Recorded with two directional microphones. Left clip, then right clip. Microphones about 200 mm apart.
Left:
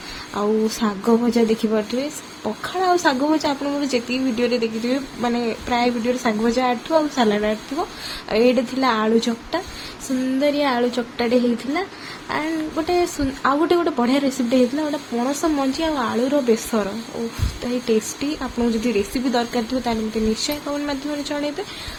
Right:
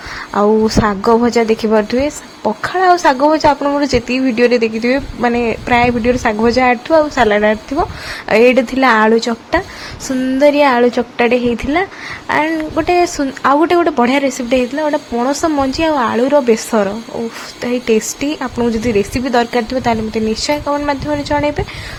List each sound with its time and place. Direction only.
0.3 s a woman's voice: 30° right (ahead or behind)